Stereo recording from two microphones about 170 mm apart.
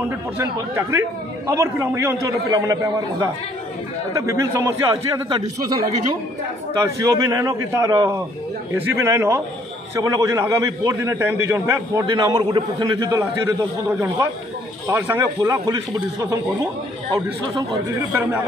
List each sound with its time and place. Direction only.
0.4 s a man's voice: 15° right (ahead or behind)